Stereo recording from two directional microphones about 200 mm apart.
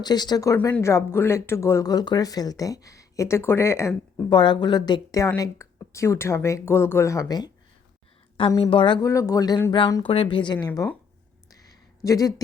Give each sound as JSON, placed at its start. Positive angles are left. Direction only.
{"t": 0.0, "sound": "speech", "side_deg": 20}
{"t": 10.7, "sound": "speech", "side_deg": 10}
{"t": 11.5, "sound": "a sound", "side_deg": 20}